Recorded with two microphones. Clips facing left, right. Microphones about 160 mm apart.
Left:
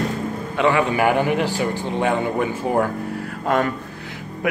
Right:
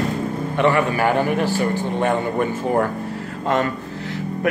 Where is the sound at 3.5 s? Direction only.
15° left (ahead or behind).